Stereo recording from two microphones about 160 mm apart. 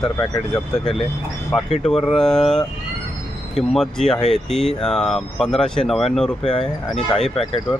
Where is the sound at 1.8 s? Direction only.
Centre (ahead or behind).